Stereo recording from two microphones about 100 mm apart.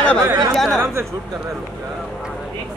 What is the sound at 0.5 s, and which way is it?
Speech, centre (ahead or behind).